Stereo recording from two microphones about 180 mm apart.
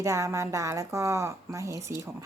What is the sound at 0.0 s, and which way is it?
Speech, 15° right (ahead or behind).